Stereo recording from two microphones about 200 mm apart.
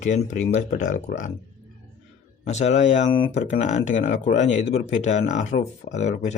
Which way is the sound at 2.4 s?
35° left (ahead or behind).